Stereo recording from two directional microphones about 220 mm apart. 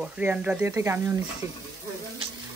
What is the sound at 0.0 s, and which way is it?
Speech, 5° right (ahead or behind).